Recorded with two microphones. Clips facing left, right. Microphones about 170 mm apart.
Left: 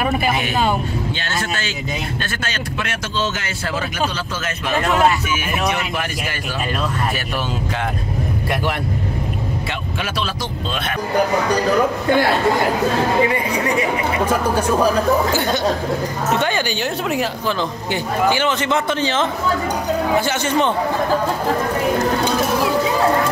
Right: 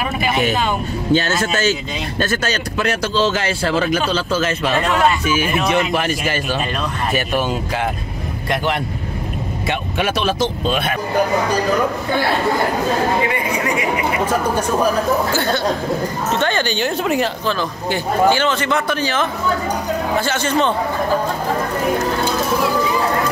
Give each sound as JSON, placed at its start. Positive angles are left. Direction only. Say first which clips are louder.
{"t": 1.1, "sound": "speech", "louder": "right 8 dB", "side_deg": -40}
{"t": 5.3, "sound": "speech", "louder": "right 4 dB", "side_deg": -30}
{"t": 10.2, "sound": "speech", "louder": "right 7 dB", "side_deg": -20}
{"t": 15.3, "sound": "a woman's voice", "louder": "even", "side_deg": 15}
{"t": 18.3, "sound": "a man's voice", "louder": "right 1 dB", "side_deg": 15}